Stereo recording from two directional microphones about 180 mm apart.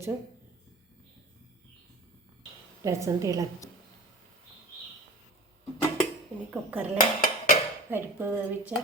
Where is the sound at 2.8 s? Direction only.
15° right (ahead or behind).